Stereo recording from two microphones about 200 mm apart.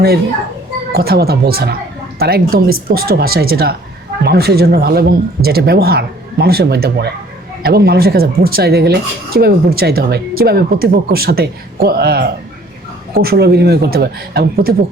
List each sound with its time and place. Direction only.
0.9 s speech: 50° right (ahead or behind)